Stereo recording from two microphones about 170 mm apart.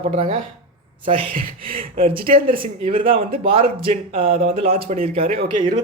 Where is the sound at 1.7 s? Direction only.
35° right (ahead or behind).